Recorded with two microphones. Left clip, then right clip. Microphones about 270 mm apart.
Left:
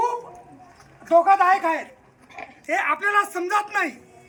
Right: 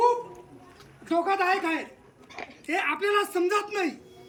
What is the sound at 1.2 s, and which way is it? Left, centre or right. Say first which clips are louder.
A man's voice: left 7 dB; centre.